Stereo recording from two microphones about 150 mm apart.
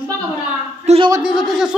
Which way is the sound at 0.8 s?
35° right (ahead or behind).